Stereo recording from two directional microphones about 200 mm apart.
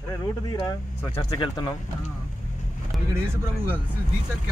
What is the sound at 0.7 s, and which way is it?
Speech, 20° left (ahead or behind).